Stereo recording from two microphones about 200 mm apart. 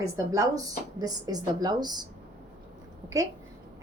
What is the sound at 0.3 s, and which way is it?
Speech, 15° right (ahead or behind).